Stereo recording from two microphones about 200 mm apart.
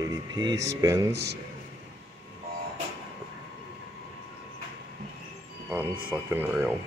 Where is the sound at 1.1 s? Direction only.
55° right (ahead or behind).